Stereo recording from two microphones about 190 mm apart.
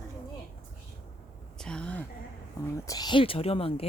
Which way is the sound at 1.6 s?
5° left (ahead or behind).